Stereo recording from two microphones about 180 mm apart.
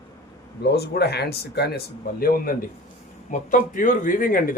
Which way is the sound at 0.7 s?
60° left (ahead or behind).